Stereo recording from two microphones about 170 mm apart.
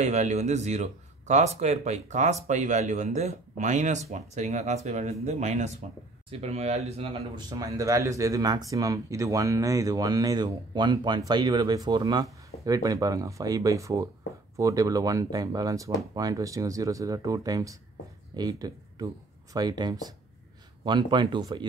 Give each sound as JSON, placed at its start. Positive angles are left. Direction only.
{"t": 0.0, "sound": "speech", "side_deg": -45}
{"t": 7.3, "sound": "speech", "side_deg": -20}